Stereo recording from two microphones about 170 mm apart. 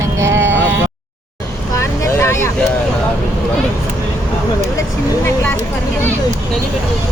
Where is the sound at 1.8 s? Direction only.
15° left (ahead or behind).